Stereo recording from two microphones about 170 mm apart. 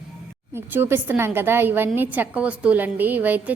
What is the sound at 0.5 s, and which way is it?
A woman's voice, 10° right (ahead or behind).